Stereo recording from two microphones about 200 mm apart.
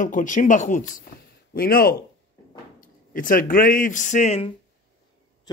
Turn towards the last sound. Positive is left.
turn(degrees=30)  # may be behind; listen again after turning